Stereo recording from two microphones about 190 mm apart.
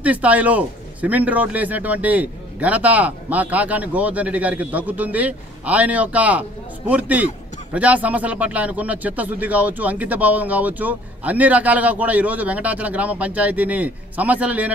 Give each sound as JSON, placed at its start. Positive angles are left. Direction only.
{"t": 0.0, "sound": "a man's voice", "side_deg": -5}